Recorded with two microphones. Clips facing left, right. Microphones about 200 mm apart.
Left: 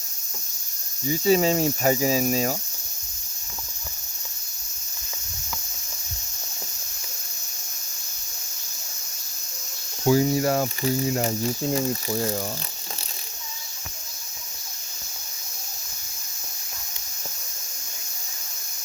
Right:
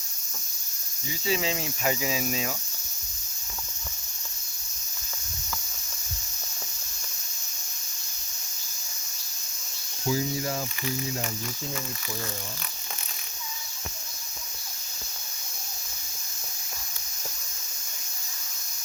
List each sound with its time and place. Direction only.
1.0 s cricket: 40° left (ahead or behind)
10.0 s speech: 65° left (ahead or behind)
11.2 s cricket: 35° left (ahead or behind)